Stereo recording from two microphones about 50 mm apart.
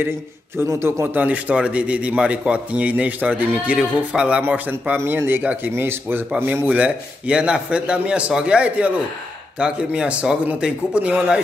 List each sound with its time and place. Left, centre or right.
0.7 s a man's voice: right
1.1 s a man's voice: right
4.9 s speech: right
5.4 s speech: right
5.8 s speech: right
6.7 s a man's voice: right